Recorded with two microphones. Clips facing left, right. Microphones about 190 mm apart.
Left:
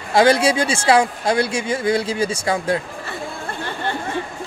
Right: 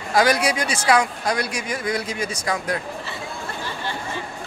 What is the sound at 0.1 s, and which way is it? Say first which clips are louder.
Speech: left 4 dB; 25° left (ahead or behind).